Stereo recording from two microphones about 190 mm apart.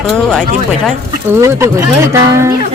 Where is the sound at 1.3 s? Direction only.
10° right (ahead or behind).